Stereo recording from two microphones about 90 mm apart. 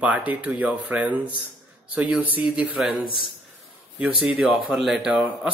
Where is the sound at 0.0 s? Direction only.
15° right (ahead or behind).